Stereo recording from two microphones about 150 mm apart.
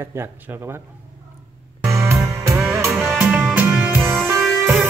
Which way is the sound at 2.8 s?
Centre (ahead or behind).